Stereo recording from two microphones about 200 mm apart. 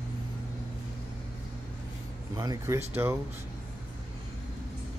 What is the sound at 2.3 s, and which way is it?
Speech, 20° right (ahead or behind).